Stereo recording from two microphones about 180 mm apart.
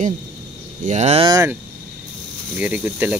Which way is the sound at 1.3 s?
15° right (ahead or behind).